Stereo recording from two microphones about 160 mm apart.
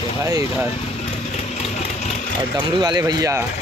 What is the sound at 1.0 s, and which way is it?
Vehicle, 45° left (ahead or behind).